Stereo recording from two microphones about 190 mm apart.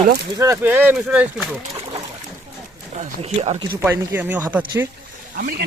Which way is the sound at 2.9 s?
35° right (ahead or behind).